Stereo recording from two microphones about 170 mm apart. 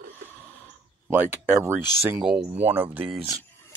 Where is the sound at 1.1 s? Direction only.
10° right (ahead or behind).